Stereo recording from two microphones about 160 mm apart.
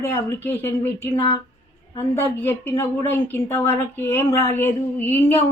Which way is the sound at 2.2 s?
15° left (ahead or behind).